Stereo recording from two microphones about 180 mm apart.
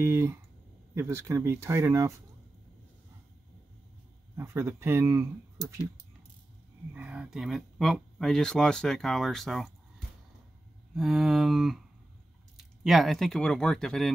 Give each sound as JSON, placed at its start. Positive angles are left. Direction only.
{"t": 0.0, "sound": "speech", "side_deg": -15}
{"t": 4.4, "sound": "speech", "side_deg": -15}
{"t": 6.9, "sound": "speech", "side_deg": -5}